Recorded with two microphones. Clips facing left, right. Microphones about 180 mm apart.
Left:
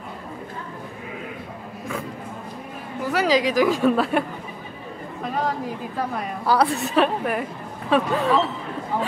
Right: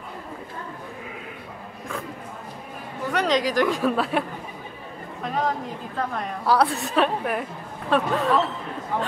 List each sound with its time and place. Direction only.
3.1 s a woman's voice: 5° left (ahead or behind)
5.2 s chatter: centre (ahead or behind)
5.9 s a woman's voice: 5° left (ahead or behind)